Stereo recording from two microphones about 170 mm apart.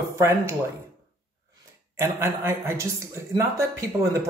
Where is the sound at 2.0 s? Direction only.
15° right (ahead or behind).